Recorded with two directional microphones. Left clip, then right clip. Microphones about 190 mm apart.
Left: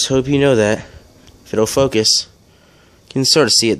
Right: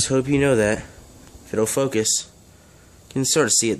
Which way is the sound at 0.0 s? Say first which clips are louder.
Left 5 dB; 25° left (ahead or behind).